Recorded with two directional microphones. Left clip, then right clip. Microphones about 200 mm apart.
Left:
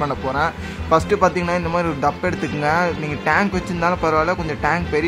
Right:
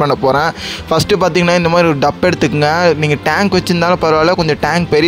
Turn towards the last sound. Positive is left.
turn(degrees=-40)  # may be behind; listen again after turning